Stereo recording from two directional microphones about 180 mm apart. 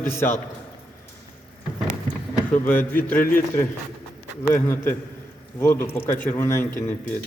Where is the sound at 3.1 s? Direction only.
50° left (ahead or behind).